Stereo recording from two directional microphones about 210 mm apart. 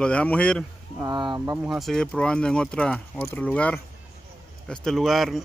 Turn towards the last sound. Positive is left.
turn(degrees=0)  # may be behind; listen again after turning